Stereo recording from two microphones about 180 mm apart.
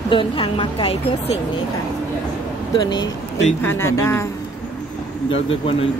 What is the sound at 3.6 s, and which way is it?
Speech, 10° left (ahead or behind).